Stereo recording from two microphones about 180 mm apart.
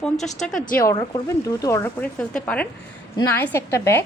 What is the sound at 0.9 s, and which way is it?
Speech, 20° left (ahead or behind).